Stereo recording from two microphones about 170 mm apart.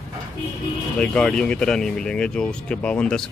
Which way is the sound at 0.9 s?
5° left (ahead or behind).